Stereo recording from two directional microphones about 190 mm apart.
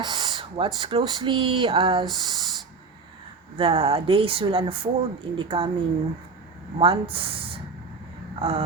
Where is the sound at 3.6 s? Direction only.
30° right (ahead or behind).